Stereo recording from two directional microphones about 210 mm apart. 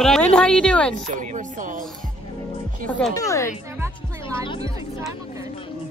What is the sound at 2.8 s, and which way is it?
Speech, 5° left (ahead or behind).